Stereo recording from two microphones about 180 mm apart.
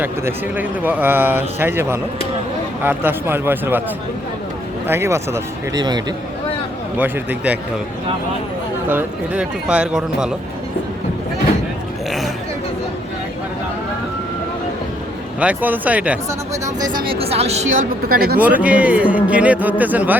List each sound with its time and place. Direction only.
0.0 s speech: 10° right (ahead or behind)
4.9 s speech: 15° right (ahead or behind)
6.9 s speech: 10° right (ahead or behind)
8.9 s speech: 10° right (ahead or behind)
15.4 s speech: 10° right (ahead or behind)
17.1 s a woman's voice: 35° right (ahead or behind); by 18.3 s 55° right (ahead or behind)
18.3 s speech: 10° right (ahead or behind)